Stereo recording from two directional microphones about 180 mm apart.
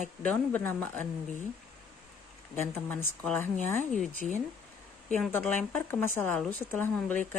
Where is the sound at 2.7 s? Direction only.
10° left (ahead or behind).